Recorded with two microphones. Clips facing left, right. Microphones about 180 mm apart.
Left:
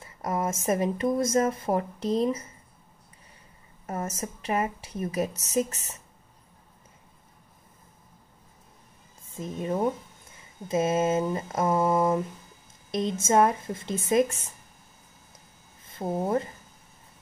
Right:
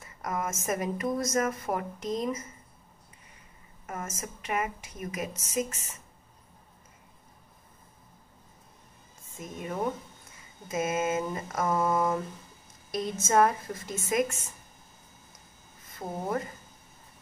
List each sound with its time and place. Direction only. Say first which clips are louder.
0.0 s a sound: left 4 dB; 30° left (ahead or behind)
0.7 s speech: left 5 dB; 30° left (ahead or behind)
3.8 s a woman's voice: left 5 dB; 35° left (ahead or behind)
9.4 s speech: left 5 dB; 30° left (ahead or behind)
15.9 s speech: left 5 dB; 25° left (ahead or behind)